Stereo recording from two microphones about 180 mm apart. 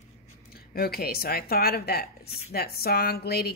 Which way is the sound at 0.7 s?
60° left (ahead or behind).